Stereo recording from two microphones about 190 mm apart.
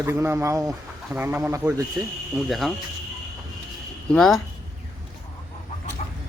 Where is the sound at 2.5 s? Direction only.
Centre (ahead or behind).